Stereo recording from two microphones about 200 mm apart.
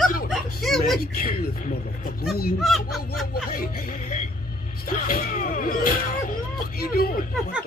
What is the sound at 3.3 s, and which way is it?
Speech, 45° left (ahead or behind).